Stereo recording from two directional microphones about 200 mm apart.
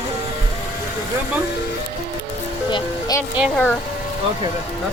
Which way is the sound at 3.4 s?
Centre (ahead or behind).